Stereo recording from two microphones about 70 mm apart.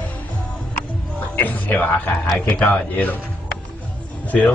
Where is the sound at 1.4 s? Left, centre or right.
Left.